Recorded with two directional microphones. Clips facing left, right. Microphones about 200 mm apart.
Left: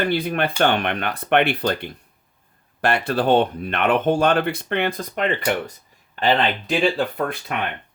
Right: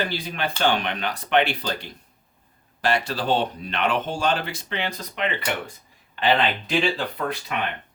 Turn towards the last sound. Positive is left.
turn(degrees=50)  # may be behind; listen again after turning